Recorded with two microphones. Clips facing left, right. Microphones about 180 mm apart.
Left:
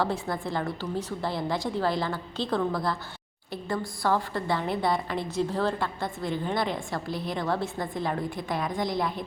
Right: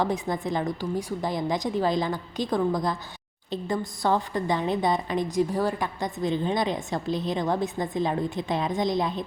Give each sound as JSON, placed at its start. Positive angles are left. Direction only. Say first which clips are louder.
{"t": 0.0, "sound": "a woman's voice", "louder": "right 2 dB", "side_deg": -20}